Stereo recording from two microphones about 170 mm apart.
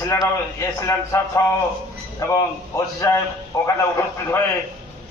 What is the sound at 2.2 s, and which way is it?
Speech, 20° left (ahead or behind).